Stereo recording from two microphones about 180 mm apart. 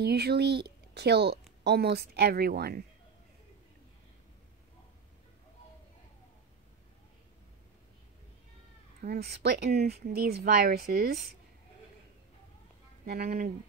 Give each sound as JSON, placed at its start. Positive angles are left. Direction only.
{"t": 0.0, "sound": "speech", "side_deg": -65}
{"t": 9.0, "sound": "speech", "side_deg": -60}
{"t": 13.0, "sound": "speech", "side_deg": -60}